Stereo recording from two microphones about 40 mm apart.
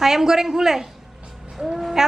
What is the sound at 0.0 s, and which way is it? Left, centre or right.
Speech, centre.